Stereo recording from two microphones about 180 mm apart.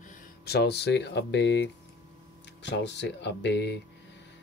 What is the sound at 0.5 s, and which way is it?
Speech, 65° left (ahead or behind).